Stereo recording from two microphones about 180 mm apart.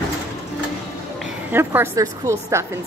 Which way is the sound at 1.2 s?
10° right (ahead or behind).